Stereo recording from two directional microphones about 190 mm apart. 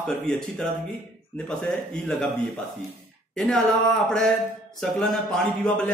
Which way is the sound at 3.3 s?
Centre (ahead or behind).